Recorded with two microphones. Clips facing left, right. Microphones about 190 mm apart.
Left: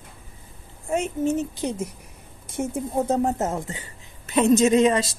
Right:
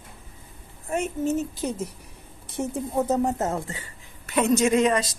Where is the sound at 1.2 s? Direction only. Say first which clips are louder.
Left 2 dB; 5° right (ahead or behind).